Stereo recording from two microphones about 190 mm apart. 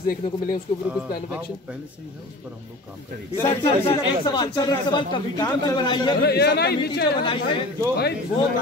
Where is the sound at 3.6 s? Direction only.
30° left (ahead or behind).